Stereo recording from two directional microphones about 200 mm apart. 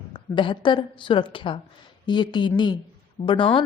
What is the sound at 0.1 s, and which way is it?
A woman's voice, 25° left (ahead or behind).